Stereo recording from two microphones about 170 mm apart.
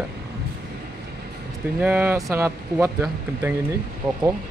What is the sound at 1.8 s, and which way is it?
Speech, 10° right (ahead or behind).